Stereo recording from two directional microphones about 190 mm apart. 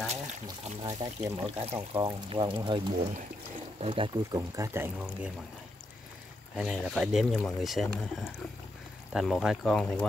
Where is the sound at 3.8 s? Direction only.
25° right (ahead or behind); by 5.3 s 10° right (ahead or behind).